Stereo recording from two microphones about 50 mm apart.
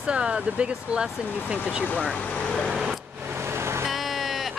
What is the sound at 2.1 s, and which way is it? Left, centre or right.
Speech, left.